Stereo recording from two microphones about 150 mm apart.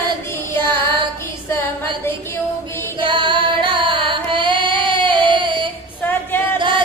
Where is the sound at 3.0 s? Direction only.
30° right (ahead or behind).